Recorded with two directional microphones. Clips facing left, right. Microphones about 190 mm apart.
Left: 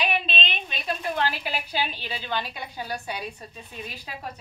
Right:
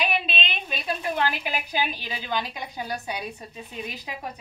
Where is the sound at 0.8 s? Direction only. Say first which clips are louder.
Right 1 dB; 15° right (ahead or behind).